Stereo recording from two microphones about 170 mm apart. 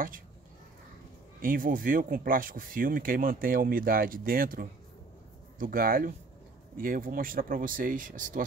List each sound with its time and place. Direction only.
1.4 s speech: 55° right (ahead or behind)